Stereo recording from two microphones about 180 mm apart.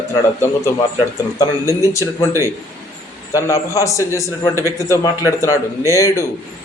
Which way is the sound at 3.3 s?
15° left (ahead or behind).